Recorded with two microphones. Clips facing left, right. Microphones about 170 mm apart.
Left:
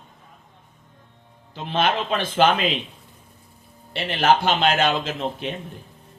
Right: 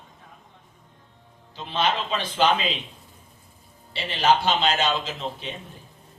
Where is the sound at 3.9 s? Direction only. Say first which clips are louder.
Left 2 dB; 55° left (ahead or behind).